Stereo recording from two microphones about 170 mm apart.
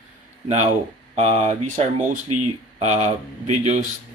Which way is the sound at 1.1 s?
40° right (ahead or behind).